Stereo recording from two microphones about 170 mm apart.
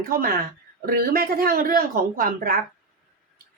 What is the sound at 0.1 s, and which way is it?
Speech, 60° right (ahead or behind).